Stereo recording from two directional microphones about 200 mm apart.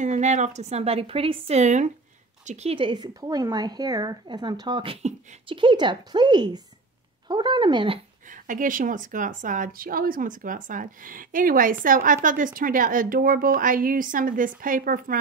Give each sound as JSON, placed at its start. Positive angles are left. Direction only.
{"t": 0.0, "sound": "a woman's voice", "side_deg": -35}
{"t": 8.3, "sound": "a woman's voice", "side_deg": -40}